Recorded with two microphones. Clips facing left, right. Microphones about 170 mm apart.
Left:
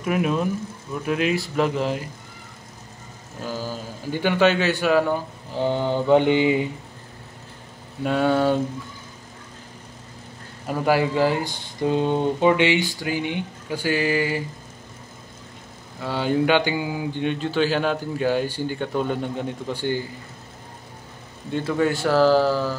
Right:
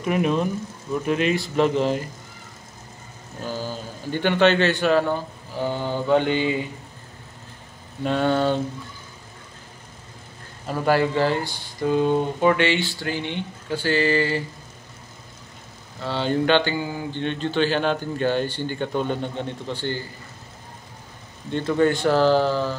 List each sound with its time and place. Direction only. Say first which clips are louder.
0.0 s speech: right 1 dB; 5° left (ahead or behind)
3.4 s a man's voice: even; 5° left (ahead or behind)
5.5 s mantra: left 3 dB; 20° left (ahead or behind)
8.0 s mantra: left 1 dB; 5° left (ahead or behind)
10.7 s mantra: even; 10° left (ahead or behind)
16.0 s mantra: left 1 dB; 10° left (ahead or behind)
21.5 s speech: right 2 dB; 5° left (ahead or behind)